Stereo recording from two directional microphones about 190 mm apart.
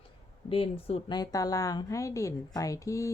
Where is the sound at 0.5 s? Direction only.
30° left (ahead or behind).